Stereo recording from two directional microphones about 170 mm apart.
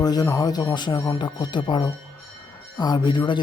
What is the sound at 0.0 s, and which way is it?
Speech, 25° left (ahead or behind).